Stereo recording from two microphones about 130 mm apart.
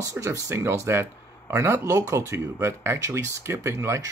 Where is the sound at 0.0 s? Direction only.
20° right (ahead or behind).